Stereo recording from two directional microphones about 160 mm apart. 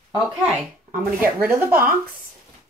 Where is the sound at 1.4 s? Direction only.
10° right (ahead or behind).